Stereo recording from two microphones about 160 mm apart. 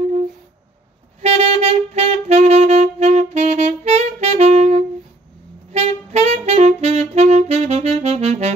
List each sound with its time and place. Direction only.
1.2 s music: 40° right (ahead or behind)
5.7 s saxophone: 40° right (ahead or behind)